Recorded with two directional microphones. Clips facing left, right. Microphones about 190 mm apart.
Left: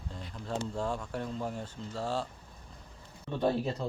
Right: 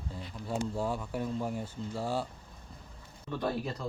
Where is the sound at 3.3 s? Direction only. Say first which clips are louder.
Left 4 dB; 25° left (ahead or behind).